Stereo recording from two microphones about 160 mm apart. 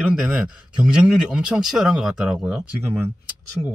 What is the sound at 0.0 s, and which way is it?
Speech, 5° right (ahead or behind).